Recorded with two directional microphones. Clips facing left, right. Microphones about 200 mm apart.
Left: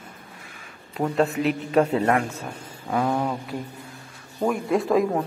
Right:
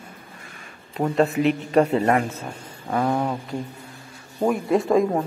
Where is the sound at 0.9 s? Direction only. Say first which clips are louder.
Right 2 dB; centre (ahead or behind).